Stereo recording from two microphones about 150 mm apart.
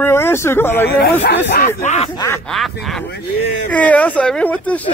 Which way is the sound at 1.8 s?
50° left (ahead or behind).